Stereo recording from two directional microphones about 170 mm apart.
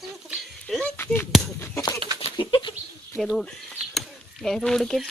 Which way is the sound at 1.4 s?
15° left (ahead or behind).